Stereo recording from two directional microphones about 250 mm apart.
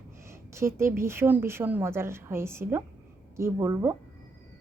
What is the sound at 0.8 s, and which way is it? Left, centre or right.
A woman's voice, centre.